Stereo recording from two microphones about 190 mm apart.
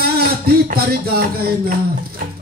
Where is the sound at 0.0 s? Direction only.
50° right (ahead or behind).